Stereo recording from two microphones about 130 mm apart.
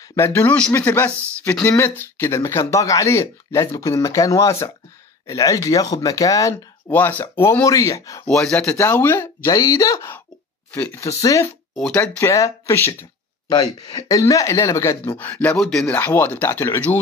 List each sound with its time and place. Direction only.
0.1 s speech: 20° left (ahead or behind)
6.9 s speech: 15° left (ahead or behind)
8.3 s speech: 5° left (ahead or behind)
8.6 s speech: 20° left (ahead or behind)
11.7 s speech: 5° left (ahead or behind)
12.2 s speech: 25° left (ahead or behind)
13.6 s speech: 35° left (ahead or behind); by 17.0 s 15° left (ahead or behind)